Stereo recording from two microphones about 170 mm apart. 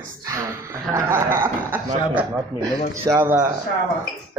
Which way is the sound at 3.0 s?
15° right (ahead or behind).